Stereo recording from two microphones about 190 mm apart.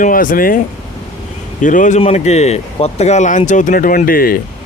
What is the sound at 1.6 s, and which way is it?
Speech, 40° left (ahead or behind).